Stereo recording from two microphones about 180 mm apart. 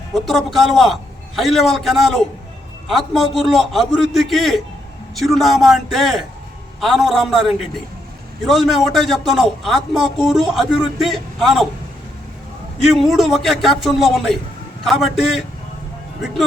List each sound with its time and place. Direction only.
0.1 s a man's voice: centre (ahead or behind)
12.8 s a man's voice: centre (ahead or behind)